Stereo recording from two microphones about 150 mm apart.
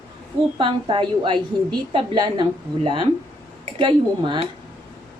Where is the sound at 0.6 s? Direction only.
35° right (ahead or behind).